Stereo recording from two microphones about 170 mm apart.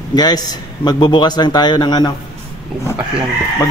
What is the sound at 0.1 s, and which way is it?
A man's voice, 25° left (ahead or behind).